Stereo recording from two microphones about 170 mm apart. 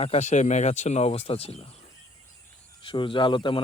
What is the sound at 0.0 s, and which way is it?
Speech, 40° left (ahead or behind).